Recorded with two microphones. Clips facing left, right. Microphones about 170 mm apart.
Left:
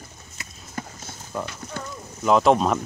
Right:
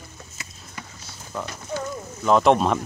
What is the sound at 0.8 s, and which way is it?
Clip-clop, 45° left (ahead or behind).